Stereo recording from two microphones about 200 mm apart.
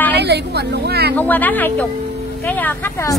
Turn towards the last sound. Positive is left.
turn(degrees=10)  # may be behind; listen again after turning